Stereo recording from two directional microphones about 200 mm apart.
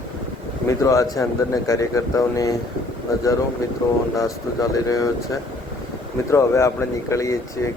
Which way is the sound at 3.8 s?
20° left (ahead or behind).